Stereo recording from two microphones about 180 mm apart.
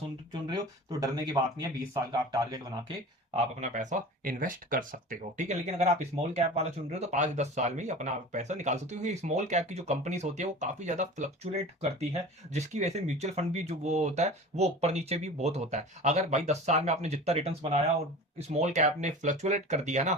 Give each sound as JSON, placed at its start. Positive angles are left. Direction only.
{"t": 0.4, "sound": "speech", "side_deg": -20}
{"t": 3.3, "sound": "speech", "side_deg": -40}